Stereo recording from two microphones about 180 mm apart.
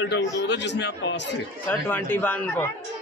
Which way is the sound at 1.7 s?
10° left (ahead or behind).